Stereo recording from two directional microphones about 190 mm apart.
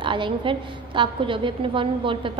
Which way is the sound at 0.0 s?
25° right (ahead or behind).